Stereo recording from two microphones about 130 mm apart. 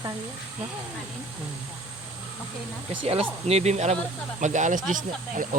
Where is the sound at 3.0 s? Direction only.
50° right (ahead or behind).